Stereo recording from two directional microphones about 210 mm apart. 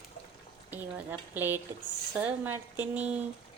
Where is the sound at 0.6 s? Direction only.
10° right (ahead or behind).